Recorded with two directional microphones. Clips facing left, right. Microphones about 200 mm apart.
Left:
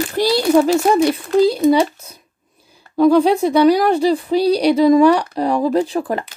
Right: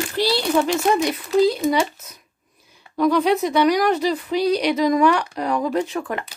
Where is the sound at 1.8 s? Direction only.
30° left (ahead or behind).